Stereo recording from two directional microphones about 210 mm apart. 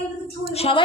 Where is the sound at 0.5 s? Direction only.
30° left (ahead or behind).